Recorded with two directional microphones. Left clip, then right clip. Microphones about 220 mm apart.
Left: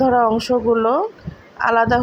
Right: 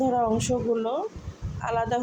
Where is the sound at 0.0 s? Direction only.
15° left (ahead or behind).